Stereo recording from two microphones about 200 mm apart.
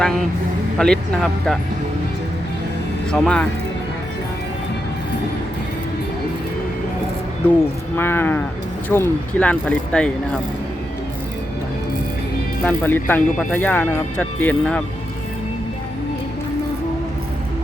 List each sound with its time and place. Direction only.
0.0 s speech: centre (ahead or behind)
3.1 s speech: 5° left (ahead or behind)
7.9 s speech: 10° left (ahead or behind)
12.6 s speech: 10° left (ahead or behind)